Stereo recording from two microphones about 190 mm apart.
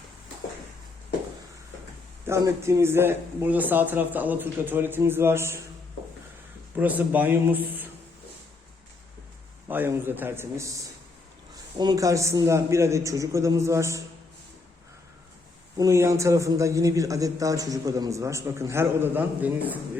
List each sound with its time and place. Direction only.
2.2 s a man's voice: 15° right (ahead or behind)
6.7 s a man's voice: 10° right (ahead or behind)
9.6 s a man's voice: 10° right (ahead or behind)
11.8 s a man's voice: 20° right (ahead or behind)
15.8 s a man's voice: 15° right (ahead or behind)